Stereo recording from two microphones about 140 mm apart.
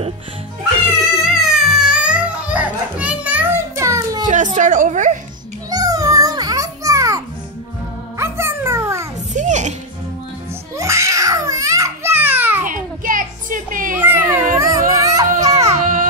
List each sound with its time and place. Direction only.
1.2 s music: 5° right (ahead or behind); by 4.2 s 20° right (ahead or behind)
4.3 s a woman's voice: 60° right (ahead or behind)
5.7 s children playing: 25° right (ahead or behind)
8.2 s dog: 15° right (ahead or behind)
9.3 s music: 60° right (ahead or behind)
10.8 s baby cry: 20° right (ahead or behind)
12.6 s children playing: 75° right (ahead or behind)
13.9 s a sound: 15° right (ahead or behind)
15.4 s baby cry: 25° right (ahead or behind)
15.8 s baby cry: 70° right (ahead or behind)